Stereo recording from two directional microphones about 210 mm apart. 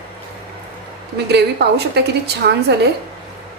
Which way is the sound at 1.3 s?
50° right (ahead or behind).